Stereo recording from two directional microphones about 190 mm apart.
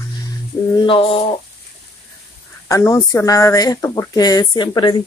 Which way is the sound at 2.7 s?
15° left (ahead or behind).